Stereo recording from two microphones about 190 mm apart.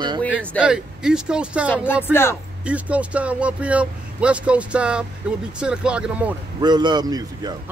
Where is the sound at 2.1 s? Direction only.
10° left (ahead or behind).